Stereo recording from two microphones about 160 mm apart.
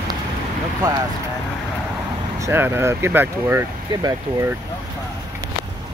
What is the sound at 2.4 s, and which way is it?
Speech, 15° right (ahead or behind).